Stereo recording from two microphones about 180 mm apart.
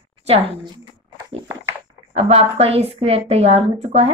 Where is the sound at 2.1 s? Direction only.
35° right (ahead or behind).